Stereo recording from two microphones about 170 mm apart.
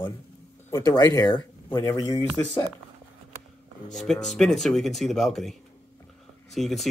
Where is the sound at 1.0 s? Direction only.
25° left (ahead or behind).